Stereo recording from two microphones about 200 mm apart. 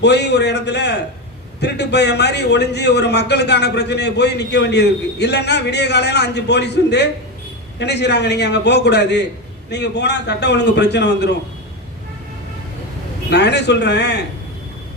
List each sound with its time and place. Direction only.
0.0 s a man's voice: 55° left (ahead or behind)
13.3 s a man's voice: 55° left (ahead or behind)